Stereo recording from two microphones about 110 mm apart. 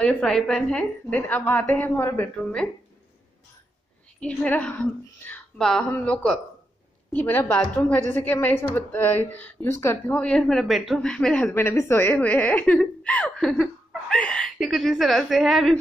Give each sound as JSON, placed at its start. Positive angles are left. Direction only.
{"t": 0.0, "sound": "a woman's voice", "side_deg": 10}
{"t": 4.2, "sound": "a woman's voice", "side_deg": 15}
{"t": 5.3, "sound": "a sound", "side_deg": 15}
{"t": 5.6, "sound": "a woman's voice", "side_deg": 5}
{"t": 5.9, "sound": "a woman's voice", "side_deg": 15}
{"t": 10.2, "sound": "a woman's voice", "side_deg": 5}
{"t": 11.5, "sound": "a woman's voice", "side_deg": 25}